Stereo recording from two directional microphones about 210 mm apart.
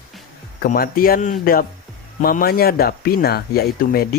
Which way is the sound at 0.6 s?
45° left (ahead or behind).